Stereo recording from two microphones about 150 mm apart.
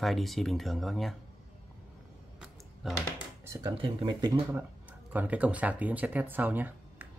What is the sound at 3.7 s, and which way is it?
Speech, 35° right (ahead or behind).